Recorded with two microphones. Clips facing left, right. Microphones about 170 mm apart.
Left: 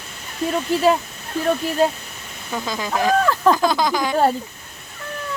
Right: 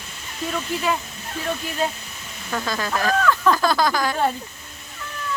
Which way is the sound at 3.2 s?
30° left (ahead or behind).